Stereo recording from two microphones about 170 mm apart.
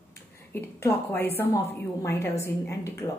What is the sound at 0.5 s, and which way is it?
A woman's voice, 10° left (ahead or behind).